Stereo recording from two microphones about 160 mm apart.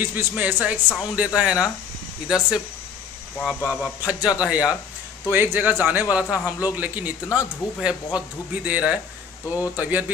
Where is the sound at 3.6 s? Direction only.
15° left (ahead or behind).